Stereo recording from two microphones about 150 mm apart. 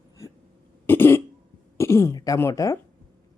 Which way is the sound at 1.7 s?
20° left (ahead or behind).